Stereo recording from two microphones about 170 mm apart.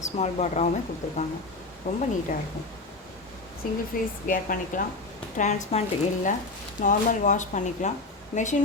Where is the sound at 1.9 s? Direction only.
45° left (ahead or behind).